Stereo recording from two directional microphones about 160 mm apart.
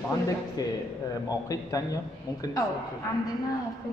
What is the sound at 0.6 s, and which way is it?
A man's voice, 25° left (ahead or behind).